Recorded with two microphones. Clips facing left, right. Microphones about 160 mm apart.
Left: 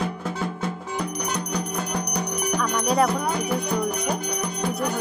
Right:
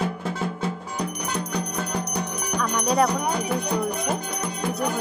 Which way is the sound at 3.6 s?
Centre (ahead or behind).